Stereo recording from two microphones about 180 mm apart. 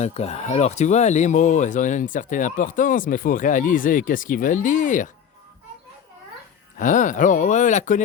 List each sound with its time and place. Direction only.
0.0 s speech: 35° left (ahead or behind)
6.7 s speech: 45° left (ahead or behind)